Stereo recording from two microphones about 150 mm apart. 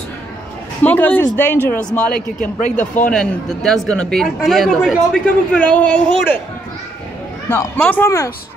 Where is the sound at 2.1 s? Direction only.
60° left (ahead or behind).